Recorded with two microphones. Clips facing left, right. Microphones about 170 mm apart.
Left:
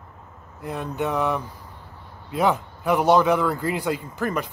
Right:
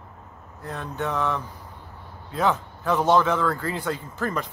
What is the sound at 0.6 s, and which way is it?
A man's voice, 15° left (ahead or behind).